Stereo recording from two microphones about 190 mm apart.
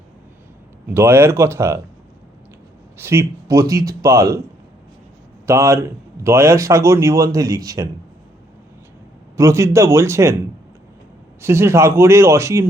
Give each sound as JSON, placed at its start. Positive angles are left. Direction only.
{"t": 0.9, "sound": "speech", "side_deg": -10}
{"t": 3.0, "sound": "speech", "side_deg": -15}
{"t": 5.5, "sound": "speech", "side_deg": -15}
{"t": 9.4, "sound": "speech", "side_deg": -15}
{"t": 11.3, "sound": "speech", "side_deg": -15}